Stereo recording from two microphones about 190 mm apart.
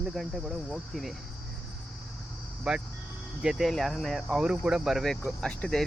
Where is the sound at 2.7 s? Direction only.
Centre (ahead or behind).